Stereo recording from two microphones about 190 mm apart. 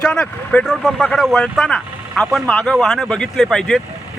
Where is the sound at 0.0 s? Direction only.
5° left (ahead or behind).